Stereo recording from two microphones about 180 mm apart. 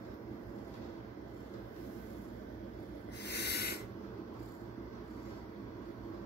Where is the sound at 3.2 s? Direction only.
65° left (ahead or behind).